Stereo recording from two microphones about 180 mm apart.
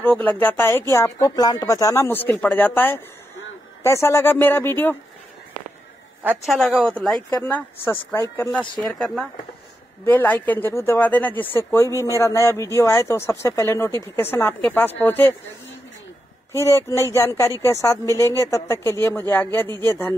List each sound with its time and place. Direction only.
0.0 s speech: 10° left (ahead or behind)
6.2 s a woman's voice: centre (ahead or behind)
16.5 s speech: 15° left (ahead or behind)